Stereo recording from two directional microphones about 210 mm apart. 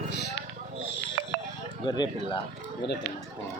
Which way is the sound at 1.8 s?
20° left (ahead or behind).